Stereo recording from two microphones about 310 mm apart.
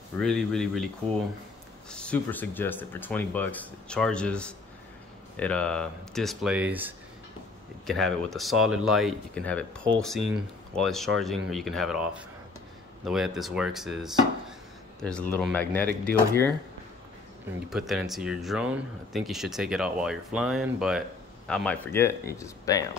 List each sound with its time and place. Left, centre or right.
0.2 s speech: centre
1.9 s speech: centre
17.6 s speech: centre